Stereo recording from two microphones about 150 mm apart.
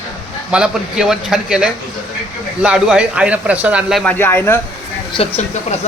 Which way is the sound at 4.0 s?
10° left (ahead or behind).